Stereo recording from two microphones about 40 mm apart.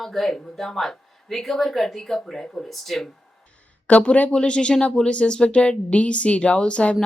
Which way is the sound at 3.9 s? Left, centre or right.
Left.